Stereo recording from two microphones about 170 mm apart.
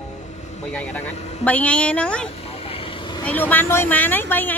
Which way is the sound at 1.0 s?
40° left (ahead or behind).